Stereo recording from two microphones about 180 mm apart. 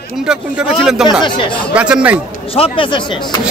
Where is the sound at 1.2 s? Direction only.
25° left (ahead or behind).